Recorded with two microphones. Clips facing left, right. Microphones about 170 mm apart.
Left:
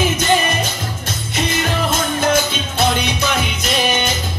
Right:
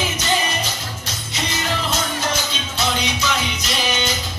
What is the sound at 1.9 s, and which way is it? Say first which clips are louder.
Music: left 6 dB; 50° left (ahead or behind).